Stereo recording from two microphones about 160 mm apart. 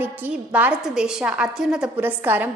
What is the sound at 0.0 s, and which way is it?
A woman's voice, 10° right (ahead or behind).